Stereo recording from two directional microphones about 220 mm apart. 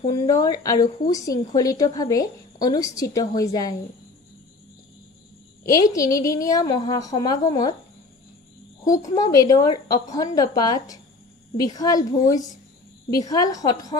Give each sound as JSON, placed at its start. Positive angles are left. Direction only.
{"t": 0.0, "sound": "a woman's voice", "side_deg": 15}
{"t": 5.8, "sound": "a woman's voice", "side_deg": 15}
{"t": 9.1, "sound": "a woman's voice", "side_deg": 15}